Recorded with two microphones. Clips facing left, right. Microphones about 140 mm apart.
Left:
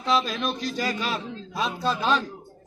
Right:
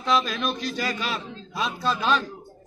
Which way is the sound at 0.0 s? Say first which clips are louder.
Even; 30° left (ahead or behind).